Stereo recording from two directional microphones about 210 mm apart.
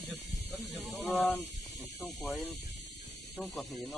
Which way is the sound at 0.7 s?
Centre (ahead or behind).